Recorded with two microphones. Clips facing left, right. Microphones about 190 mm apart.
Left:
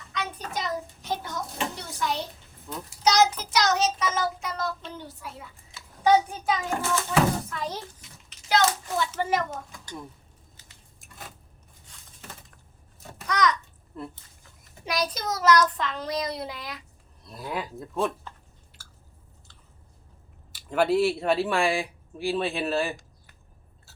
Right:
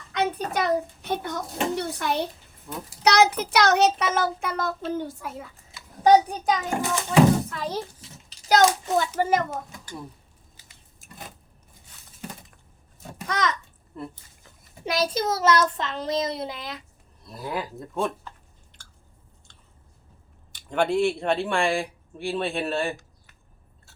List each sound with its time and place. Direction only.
0.2 s child singing: 60° right (ahead or behind)
6.0 s a child's voice: 40° right (ahead or behind)
6.7 s a child's voice: 15° right (ahead or behind)
8.0 s a sound: 35° right (ahead or behind)
9.2 s a child's voice: 40° right (ahead or behind)
10.6 s a sound: 10° right (ahead or behind)
11.0 s vehicle: centre (ahead or behind)
13.2 s a sound: 25° right (ahead or behind)
14.0 s speech: centre (ahead or behind)
14.8 s child singing: 25° right (ahead or behind)
17.2 s speech: centre (ahead or behind)
18.8 s chewing: 5° left (ahead or behind)
20.5 s speech: 5° left (ahead or behind)